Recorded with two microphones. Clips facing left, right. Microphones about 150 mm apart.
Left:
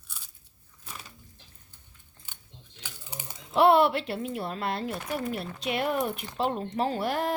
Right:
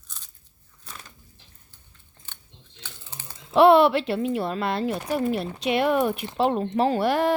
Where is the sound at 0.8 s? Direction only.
10° left (ahead or behind).